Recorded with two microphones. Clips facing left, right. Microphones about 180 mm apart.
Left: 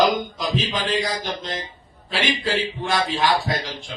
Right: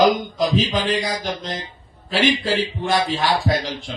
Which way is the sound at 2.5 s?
45° right (ahead or behind).